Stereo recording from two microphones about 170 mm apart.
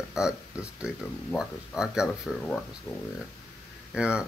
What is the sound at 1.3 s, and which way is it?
Speech, 5° right (ahead or behind).